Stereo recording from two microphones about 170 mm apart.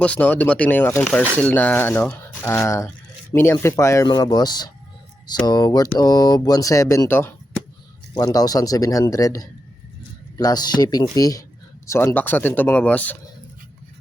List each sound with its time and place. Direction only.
0.0 s speech: 10° left (ahead or behind)